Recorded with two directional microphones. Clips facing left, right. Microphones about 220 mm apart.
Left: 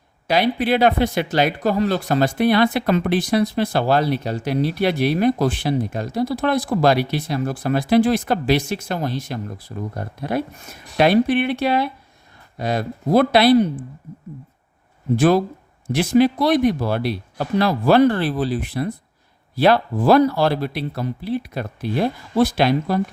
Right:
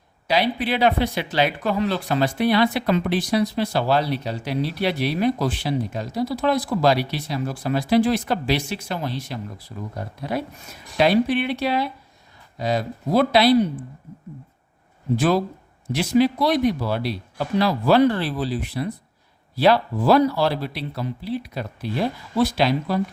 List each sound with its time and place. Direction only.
0.3 s speech: 50° left (ahead or behind)
15.1 s speech: 50° left (ahead or behind)